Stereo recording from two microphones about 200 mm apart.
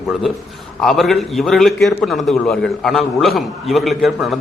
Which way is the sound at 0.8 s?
Centre (ahead or behind).